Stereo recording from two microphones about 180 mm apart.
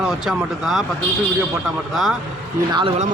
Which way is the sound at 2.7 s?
25° right (ahead or behind).